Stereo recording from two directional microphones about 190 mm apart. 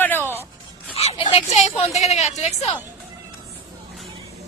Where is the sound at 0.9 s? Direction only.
30° left (ahead or behind).